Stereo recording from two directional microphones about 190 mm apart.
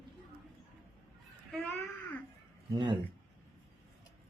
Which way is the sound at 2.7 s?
25° right (ahead or behind).